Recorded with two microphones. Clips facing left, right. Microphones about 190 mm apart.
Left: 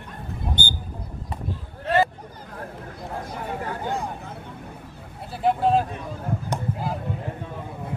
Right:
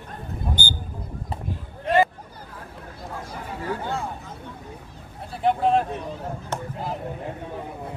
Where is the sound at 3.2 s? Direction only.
55° left (ahead or behind).